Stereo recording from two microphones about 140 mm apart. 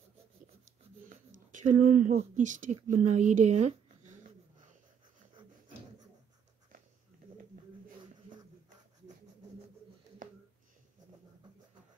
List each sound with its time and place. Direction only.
1.0 s speech: 65° right (ahead or behind)